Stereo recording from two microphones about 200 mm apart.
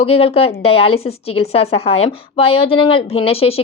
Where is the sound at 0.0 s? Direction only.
30° left (ahead or behind).